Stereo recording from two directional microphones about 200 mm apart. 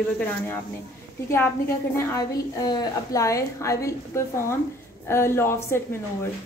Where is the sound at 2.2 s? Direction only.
20° left (ahead or behind).